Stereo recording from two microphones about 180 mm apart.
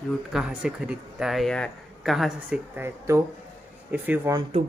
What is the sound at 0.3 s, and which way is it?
Speech, 5° right (ahead or behind).